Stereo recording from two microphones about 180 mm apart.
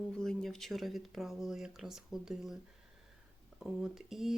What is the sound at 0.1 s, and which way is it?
Speech, 5° left (ahead or behind).